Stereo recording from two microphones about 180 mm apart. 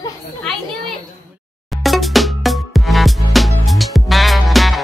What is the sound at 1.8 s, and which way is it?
Music, centre (ahead or behind).